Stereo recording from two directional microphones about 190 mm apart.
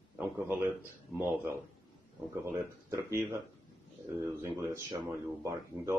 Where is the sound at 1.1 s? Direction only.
10° right (ahead or behind).